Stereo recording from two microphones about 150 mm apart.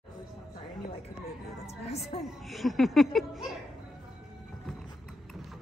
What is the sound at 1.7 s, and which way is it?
Music, 45° left (ahead or behind).